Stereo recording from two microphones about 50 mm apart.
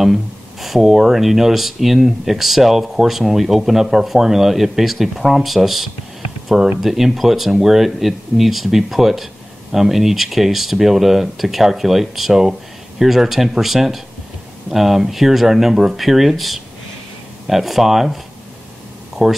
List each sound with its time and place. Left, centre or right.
0.0 s speech: centre